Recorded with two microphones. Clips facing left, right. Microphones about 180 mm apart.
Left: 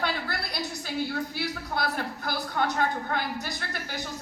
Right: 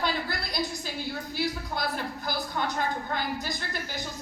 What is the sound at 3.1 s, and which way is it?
Speech, 60° left (ahead or behind).